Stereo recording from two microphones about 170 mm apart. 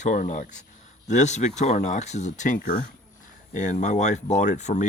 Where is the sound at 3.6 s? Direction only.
45° left (ahead or behind).